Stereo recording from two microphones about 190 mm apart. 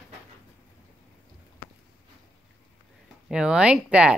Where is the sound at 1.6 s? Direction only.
15° left (ahead or behind).